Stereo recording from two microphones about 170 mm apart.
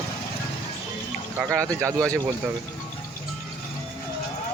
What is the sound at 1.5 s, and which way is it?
Speech, 5° left (ahead or behind).